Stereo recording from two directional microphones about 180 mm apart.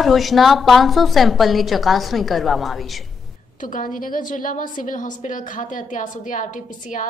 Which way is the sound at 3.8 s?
50° left (ahead or behind).